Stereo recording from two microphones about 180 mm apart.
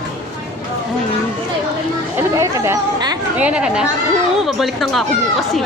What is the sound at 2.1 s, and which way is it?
Speech, 15° right (ahead or behind).